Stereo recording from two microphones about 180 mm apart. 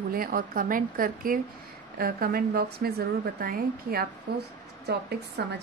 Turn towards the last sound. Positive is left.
turn(degrees=-65)  # may be behind; listen again after turning